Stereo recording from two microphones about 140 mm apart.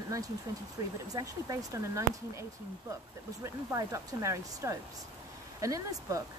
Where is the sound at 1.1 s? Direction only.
25° right (ahead or behind).